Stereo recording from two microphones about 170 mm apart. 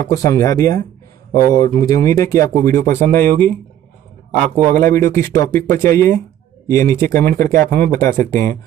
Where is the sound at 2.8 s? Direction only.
45° right (ahead or behind).